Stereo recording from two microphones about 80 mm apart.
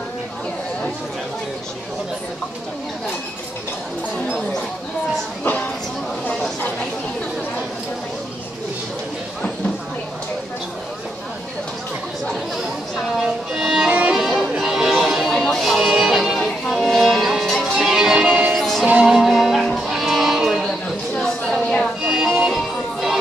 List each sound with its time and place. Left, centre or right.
5.4 s music: left
13.2 s music: centre
14.1 s music: centre
18.9 s music: centre
21.1 s a sound: centre
22.0 s music: centre